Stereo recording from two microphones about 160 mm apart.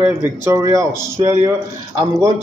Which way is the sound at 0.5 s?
20° right (ahead or behind).